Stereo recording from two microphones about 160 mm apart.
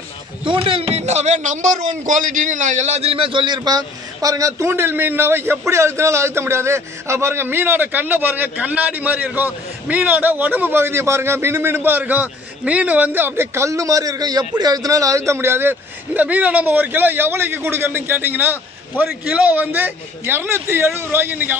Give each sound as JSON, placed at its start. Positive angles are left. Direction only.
{"t": 0.5, "sound": "a man's voice", "side_deg": -35}